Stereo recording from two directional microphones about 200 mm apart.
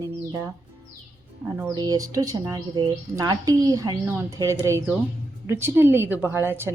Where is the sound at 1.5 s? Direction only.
20° right (ahead or behind).